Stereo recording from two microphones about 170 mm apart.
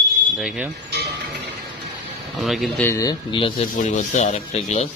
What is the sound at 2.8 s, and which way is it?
Speech, 20° left (ahead or behind).